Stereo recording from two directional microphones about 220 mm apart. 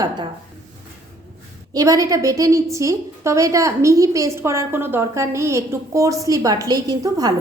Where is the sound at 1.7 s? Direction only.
15° right (ahead or behind).